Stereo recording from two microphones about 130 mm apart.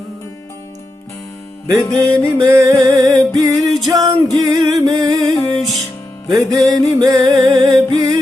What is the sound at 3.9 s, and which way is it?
Music, 30° right (ahead or behind).